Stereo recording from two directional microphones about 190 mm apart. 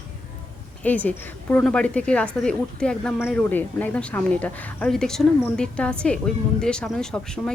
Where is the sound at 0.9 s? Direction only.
10° left (ahead or behind).